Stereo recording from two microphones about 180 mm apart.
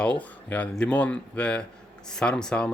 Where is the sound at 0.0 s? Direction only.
5° left (ahead or behind).